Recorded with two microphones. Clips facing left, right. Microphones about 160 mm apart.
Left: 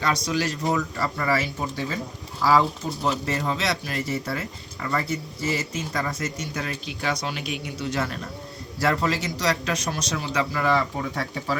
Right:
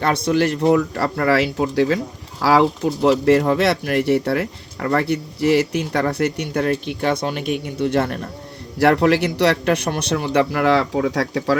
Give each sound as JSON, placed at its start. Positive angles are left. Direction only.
{"t": 0.0, "sound": "a man's voice", "side_deg": -55}